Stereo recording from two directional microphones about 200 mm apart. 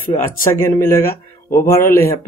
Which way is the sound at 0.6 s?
15° left (ahead or behind).